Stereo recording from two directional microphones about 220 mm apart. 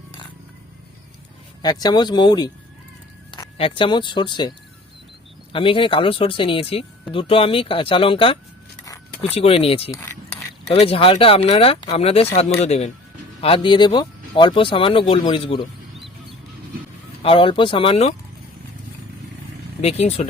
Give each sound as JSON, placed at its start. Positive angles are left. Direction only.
{"t": 1.6, "sound": "speech", "side_deg": 20}
{"t": 8.8, "sound": "keys jangling", "side_deg": 15}
{"t": 9.3, "sound": "speech", "side_deg": 25}
{"t": 9.9, "sound": "keys jangling", "side_deg": 10}
{"t": 10.7, "sound": "speech", "side_deg": 25}
{"t": 17.2, "sound": "speech", "side_deg": 25}
{"t": 19.8, "sound": "speech", "side_deg": 30}